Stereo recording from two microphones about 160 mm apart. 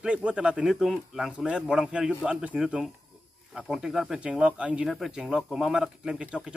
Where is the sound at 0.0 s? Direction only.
5° right (ahead or behind).